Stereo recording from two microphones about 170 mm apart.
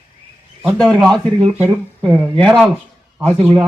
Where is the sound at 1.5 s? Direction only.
10° right (ahead or behind).